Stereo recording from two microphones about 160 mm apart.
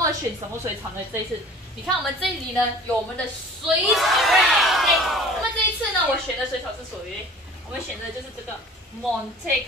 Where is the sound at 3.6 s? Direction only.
Centre (ahead or behind).